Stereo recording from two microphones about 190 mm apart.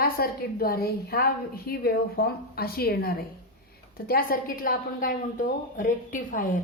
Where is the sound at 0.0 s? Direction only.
55° left (ahead or behind).